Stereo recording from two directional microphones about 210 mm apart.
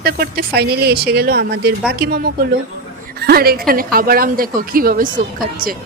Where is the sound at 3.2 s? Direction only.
45° right (ahead or behind).